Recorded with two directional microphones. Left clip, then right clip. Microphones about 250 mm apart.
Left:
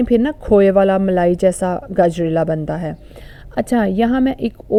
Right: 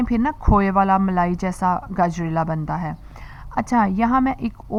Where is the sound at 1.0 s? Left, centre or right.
Centre.